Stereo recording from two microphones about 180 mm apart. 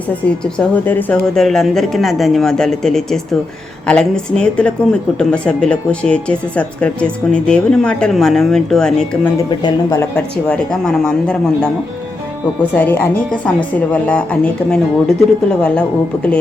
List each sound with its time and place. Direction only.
0.1 s a woman's voice: 5° left (ahead or behind)
9.5 s speech: 20° left (ahead or behind)
10.2 s a woman's voice: 5° left (ahead or behind)
12.7 s a woman's voice: 10° left (ahead or behind)